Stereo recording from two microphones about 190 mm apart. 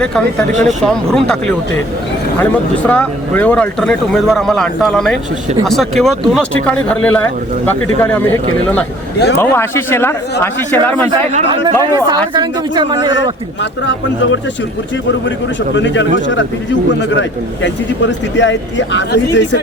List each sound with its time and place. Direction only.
0.0 s speech: 5° left (ahead or behind)
11.3 s a woman's voice: 30° right (ahead or behind)
15.7 s a man's voice: 70° left (ahead or behind)